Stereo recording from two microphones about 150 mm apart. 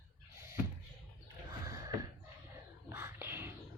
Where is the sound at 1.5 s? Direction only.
25° right (ahead or behind).